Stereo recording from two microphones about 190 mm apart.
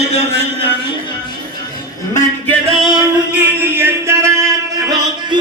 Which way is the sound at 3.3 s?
10° right (ahead or behind).